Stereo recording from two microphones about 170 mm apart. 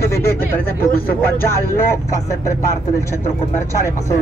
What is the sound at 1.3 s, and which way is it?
Speech, 15° left (ahead or behind).